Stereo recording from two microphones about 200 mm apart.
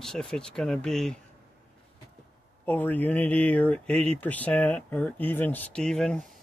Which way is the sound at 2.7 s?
10° left (ahead or behind).